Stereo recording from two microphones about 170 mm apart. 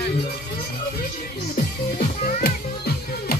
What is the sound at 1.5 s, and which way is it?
Music, 55° left (ahead or behind).